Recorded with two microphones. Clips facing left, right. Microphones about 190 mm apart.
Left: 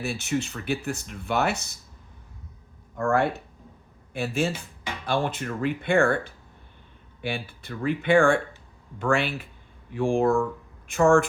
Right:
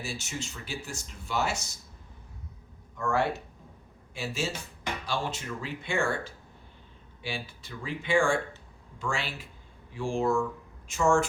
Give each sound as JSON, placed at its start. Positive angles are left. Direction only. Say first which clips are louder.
{"t": 0.0, "sound": "speech", "louder": "left 9 dB", "side_deg": 60}
{"t": 3.0, "sound": "speech", "louder": "left 5 dB", "side_deg": 55}